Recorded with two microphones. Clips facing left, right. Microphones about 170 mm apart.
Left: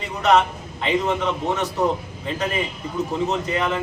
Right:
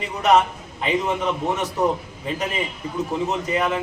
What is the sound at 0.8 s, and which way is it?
Speech, 5° right (ahead or behind).